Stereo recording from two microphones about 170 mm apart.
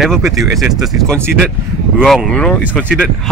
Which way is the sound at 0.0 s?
Centre (ahead or behind).